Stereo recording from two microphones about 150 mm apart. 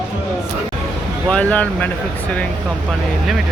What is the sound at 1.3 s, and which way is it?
Speech, 10° left (ahead or behind).